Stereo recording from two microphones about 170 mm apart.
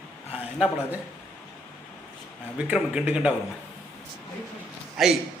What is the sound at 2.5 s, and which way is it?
Speech, 5° right (ahead or behind).